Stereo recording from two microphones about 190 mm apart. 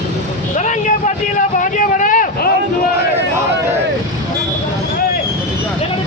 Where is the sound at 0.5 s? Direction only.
40° left (ahead or behind).